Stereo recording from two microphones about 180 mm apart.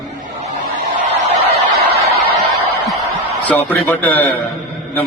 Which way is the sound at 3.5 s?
10° left (ahead or behind).